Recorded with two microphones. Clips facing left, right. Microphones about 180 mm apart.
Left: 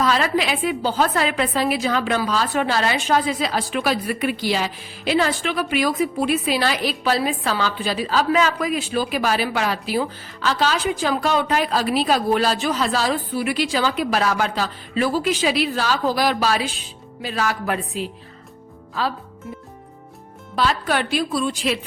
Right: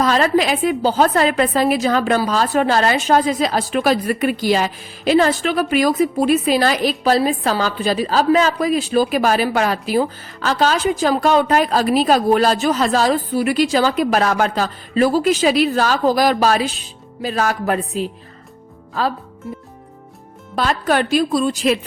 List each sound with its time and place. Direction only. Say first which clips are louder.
0.0 s a woman's voice: right 4 dB; 45° right (ahead or behind)
20.6 s a woman's voice: right 3 dB; 45° right (ahead or behind)